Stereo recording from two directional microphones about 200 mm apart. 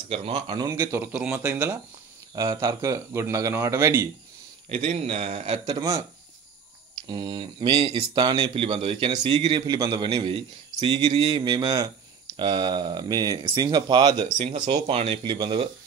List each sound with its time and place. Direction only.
0.1 s speech: 30° right (ahead or behind); by 1.8 s 10° right (ahead or behind)
2.3 s speech: 20° right (ahead or behind)
4.8 s a man's voice: 35° right (ahead or behind); by 6.0 s 20° right (ahead or behind)
7.1 s a man's voice: 20° right (ahead or behind)